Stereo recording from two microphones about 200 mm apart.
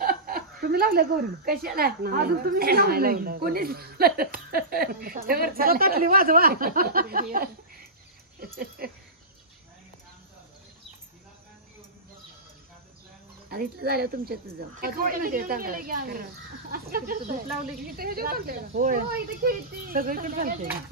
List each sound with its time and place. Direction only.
0.0 s a woman's voice: 45° right (ahead or behind)
8.5 s a woman's voice: 50° right (ahead or behind)
13.5 s a woman's voice: 50° right (ahead or behind)